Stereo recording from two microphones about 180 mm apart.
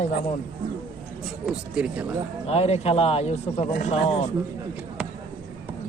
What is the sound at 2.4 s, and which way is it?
Speech, 35° left (ahead or behind).